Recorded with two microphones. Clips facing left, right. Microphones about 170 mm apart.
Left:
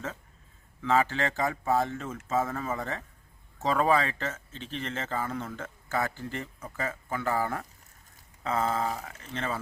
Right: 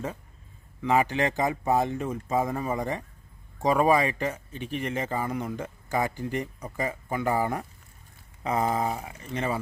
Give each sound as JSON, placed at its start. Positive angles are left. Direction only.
{"t": 0.8, "sound": "speech", "side_deg": -15}